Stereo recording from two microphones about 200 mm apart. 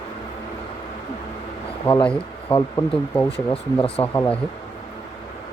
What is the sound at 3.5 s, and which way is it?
Speech, 30° left (ahead or behind).